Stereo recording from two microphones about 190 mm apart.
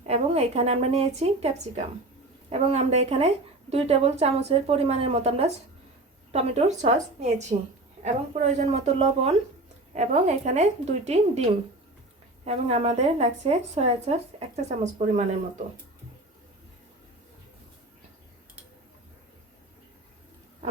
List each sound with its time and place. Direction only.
0.0 s speech: 35° right (ahead or behind)
12.5 s speech: 35° right (ahead or behind)